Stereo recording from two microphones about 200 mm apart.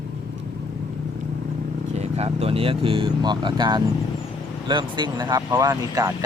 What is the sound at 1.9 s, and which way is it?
Speech, 35° right (ahead or behind).